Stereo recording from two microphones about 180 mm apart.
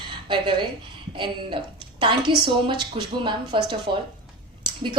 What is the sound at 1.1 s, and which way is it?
A woman's voice, 25° right (ahead or behind).